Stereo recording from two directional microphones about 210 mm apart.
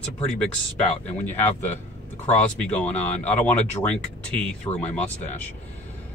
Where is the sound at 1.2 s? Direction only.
10° left (ahead or behind).